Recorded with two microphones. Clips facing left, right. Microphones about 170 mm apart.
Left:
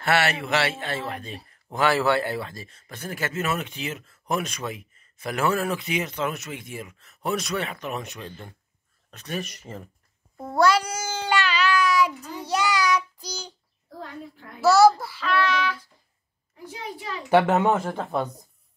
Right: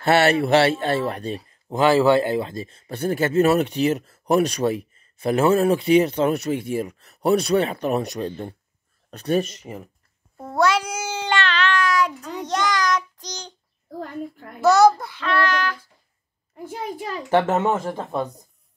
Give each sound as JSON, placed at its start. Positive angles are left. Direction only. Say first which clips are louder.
{"t": 0.0, "sound": "speech", "louder": "right 6 dB", "side_deg": -30}
{"t": 1.7, "sound": "speech", "louder": "right 6 dB", "side_deg": -20}
{"t": 10.4, "sound": "child singing", "louder": "even", "side_deg": 5}
{"t": 14.2, "sound": "child singing", "louder": "right 8 dB", "side_deg": -45}
{"t": 14.6, "sound": "a child's voice", "louder": "right 1 dB", "side_deg": 5}
{"t": 16.5, "sound": "a child's voice", "louder": "right 6 dB", "side_deg": -50}
{"t": 17.3, "sound": "speech", "louder": "even", "side_deg": 0}